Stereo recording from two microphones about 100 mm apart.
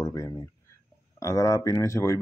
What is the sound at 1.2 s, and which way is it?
Speech, 30° left (ahead or behind).